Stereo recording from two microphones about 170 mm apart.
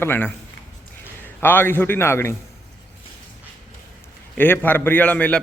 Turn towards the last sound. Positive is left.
turn(degrees=10)  # may be behind; listen again after turning